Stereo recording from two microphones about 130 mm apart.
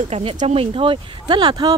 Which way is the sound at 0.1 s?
50° right (ahead or behind).